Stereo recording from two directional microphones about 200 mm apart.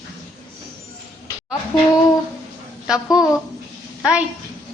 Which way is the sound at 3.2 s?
5° right (ahead or behind).